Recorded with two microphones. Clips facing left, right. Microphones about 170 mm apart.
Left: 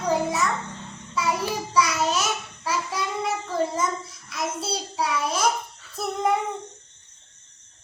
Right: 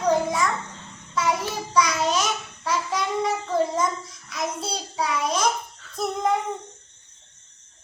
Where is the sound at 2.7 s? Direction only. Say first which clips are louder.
Right 2 dB; 5° left (ahead or behind).